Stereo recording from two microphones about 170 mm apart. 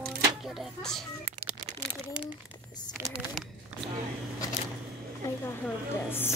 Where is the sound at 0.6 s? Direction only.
Centre (ahead or behind).